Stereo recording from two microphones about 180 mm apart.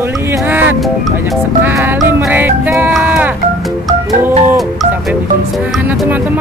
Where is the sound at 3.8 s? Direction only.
20° right (ahead or behind).